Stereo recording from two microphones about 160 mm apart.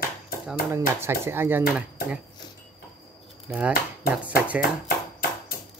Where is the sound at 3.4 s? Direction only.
5° right (ahead or behind).